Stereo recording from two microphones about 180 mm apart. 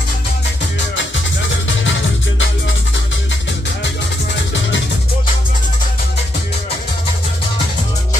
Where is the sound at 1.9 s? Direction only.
90° left.